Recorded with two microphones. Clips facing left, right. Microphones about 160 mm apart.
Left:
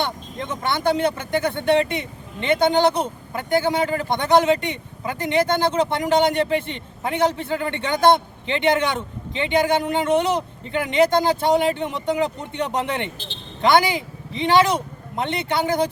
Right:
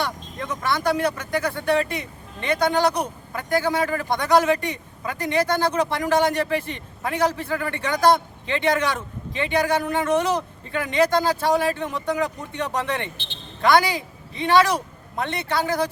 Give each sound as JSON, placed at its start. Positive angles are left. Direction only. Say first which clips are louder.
{"t": 0.0, "sound": "speech", "louder": "left 2 dB", "side_deg": 25}